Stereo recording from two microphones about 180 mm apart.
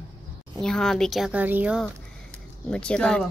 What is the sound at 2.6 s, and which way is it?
Speech, 5° left (ahead or behind).